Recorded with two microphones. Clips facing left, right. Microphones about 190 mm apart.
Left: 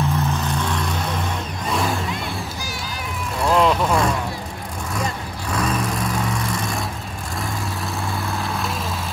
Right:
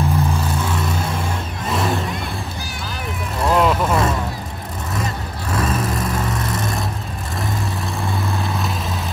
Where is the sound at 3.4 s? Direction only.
Centre (ahead or behind).